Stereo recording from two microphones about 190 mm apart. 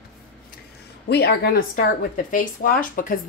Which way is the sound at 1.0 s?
60° left (ahead or behind).